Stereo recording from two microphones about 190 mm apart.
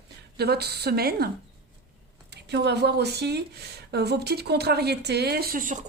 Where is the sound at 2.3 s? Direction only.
65° right (ahead or behind); by 5.8 s 45° right (ahead or behind).